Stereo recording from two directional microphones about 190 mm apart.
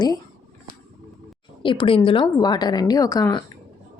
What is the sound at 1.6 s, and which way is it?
A woman's voice, 25° left (ahead or behind).